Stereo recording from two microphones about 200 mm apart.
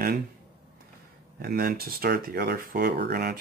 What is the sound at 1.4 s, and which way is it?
Speech, 50° right (ahead or behind).